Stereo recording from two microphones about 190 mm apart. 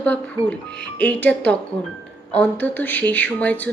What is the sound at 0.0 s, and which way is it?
Speech, 5° left (ahead or behind).